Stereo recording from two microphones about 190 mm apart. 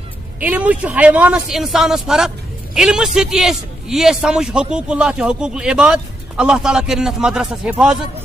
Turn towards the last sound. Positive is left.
turn(degrees=-5)  # may be behind; listen again after turning